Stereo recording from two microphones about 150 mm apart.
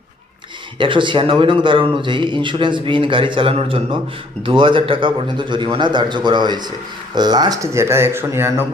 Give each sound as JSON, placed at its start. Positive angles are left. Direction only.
{"t": 0.8, "sound": "a man's voice", "side_deg": -35}